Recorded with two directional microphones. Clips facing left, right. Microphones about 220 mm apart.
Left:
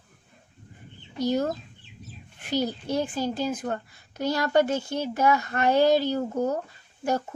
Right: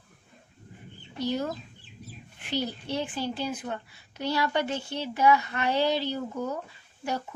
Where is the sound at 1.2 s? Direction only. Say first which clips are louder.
Left 4 dB; 45° left (ahead or behind).